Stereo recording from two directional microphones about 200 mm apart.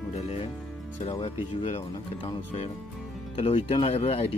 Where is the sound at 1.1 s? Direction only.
30° left (ahead or behind).